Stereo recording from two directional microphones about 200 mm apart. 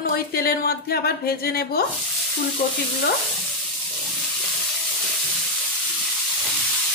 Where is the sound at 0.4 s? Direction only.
50° left (ahead or behind).